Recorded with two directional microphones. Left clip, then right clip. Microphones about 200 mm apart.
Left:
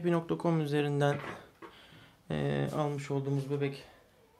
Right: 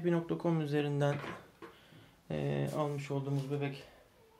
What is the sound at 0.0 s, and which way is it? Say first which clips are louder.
Speech: left 3 dB; 25° left (ahead or behind).